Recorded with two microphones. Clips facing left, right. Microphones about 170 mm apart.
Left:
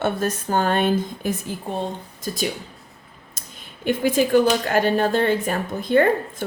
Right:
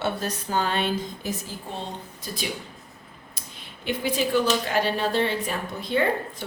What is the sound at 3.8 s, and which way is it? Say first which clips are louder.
Speech: left 6 dB; 50° left (ahead or behind).